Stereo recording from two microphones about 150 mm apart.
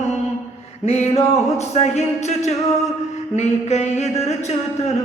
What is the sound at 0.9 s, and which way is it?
Music, 45° left (ahead or behind).